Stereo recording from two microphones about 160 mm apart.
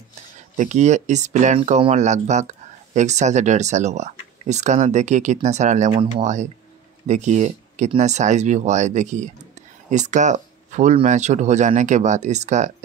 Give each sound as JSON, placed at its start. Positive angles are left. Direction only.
{"t": 0.6, "sound": "speech", "side_deg": -50}
{"t": 5.9, "sound": "speech", "side_deg": -35}
{"t": 6.2, "sound": "speech", "side_deg": -50}